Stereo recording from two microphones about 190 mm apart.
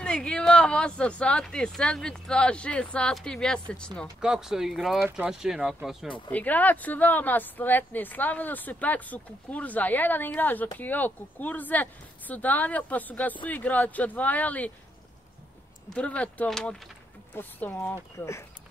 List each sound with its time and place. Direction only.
0.0 s speech: 5° left (ahead or behind)
6.0 s speech: 25° left (ahead or behind)
6.3 s speech: 10° left (ahead or behind)
15.9 s speech: 5° left (ahead or behind)